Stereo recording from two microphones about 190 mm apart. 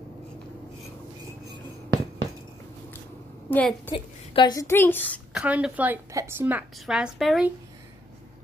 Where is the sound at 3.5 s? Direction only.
5° left (ahead or behind).